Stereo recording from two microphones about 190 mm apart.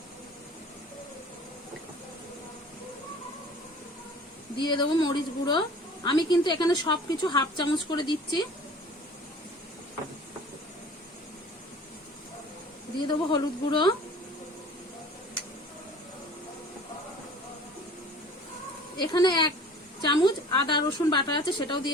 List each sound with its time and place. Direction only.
4.6 s a woman's voice: 25° left (ahead or behind)
13.1 s a woman's voice: 25° left (ahead or behind)
18.9 s a sound: 25° left (ahead or behind)